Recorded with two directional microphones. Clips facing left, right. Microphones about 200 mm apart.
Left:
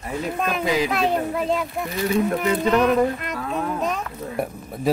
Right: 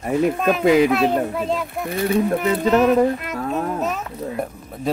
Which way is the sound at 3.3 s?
40° right (ahead or behind).